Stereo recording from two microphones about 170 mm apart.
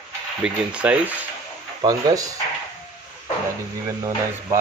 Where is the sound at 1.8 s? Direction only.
20° right (ahead or behind).